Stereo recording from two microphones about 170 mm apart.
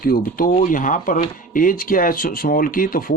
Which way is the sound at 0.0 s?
60° left (ahead or behind).